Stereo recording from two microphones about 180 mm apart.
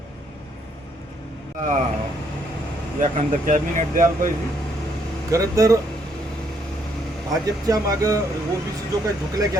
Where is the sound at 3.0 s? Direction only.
45° right (ahead or behind).